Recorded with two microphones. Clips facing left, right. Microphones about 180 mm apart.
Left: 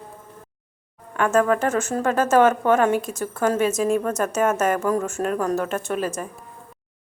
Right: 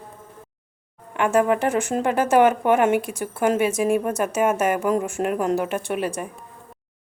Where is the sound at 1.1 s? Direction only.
15° right (ahead or behind).